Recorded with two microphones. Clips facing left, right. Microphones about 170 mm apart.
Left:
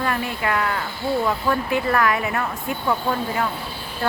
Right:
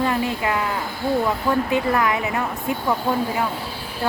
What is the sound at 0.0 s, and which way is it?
Speech, 20° right (ahead or behind).